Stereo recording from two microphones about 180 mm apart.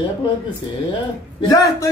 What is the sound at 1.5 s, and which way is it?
Speech, 20° left (ahead or behind).